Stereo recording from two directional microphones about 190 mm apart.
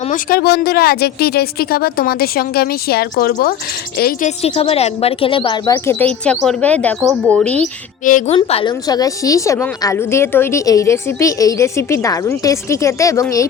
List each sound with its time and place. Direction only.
0.1 s speech: 50° left (ahead or behind)
4.4 s a woman's voice: 30° left (ahead or behind); by 7.6 s 5° left (ahead or behind)
7.6 s a woman's voice: 40° left (ahead or behind)
8.4 s a woman's voice: 30° left (ahead or behind)